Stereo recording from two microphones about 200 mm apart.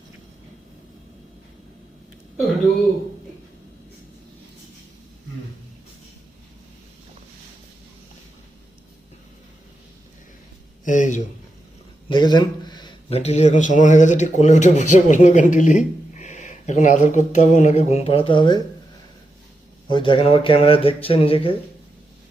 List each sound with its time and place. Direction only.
10.8 s speech: 40° left (ahead or behind)
12.0 s speech: 20° left (ahead or behind)
19.9 s speech: 25° left (ahead or behind)